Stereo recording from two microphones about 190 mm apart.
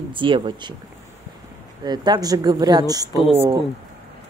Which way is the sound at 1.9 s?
20° right (ahead or behind).